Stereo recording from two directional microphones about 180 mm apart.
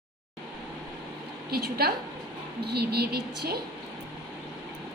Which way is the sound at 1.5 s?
60° right (ahead or behind).